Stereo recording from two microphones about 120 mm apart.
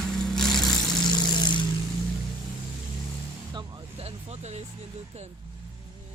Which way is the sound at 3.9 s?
60° right (ahead or behind).